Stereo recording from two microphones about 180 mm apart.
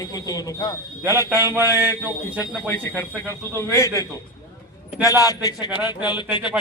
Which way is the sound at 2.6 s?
15° left (ahead or behind).